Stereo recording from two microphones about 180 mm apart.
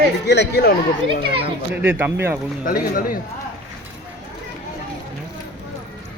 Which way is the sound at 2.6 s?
50° left (ahead or behind).